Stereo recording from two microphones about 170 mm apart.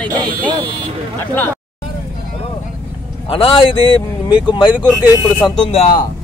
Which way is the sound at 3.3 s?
30° left (ahead or behind).